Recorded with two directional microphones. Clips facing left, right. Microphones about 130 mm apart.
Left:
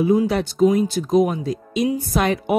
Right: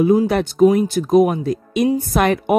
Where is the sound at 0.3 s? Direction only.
60° right (ahead or behind).